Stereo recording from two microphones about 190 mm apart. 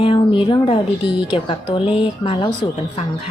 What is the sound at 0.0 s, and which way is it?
A woman's voice, 25° left (ahead or behind).